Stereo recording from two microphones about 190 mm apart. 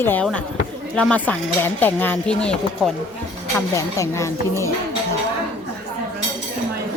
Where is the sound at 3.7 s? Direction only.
15° left (ahead or behind).